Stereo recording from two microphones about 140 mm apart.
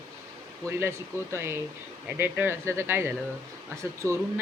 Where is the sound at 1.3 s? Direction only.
15° right (ahead or behind).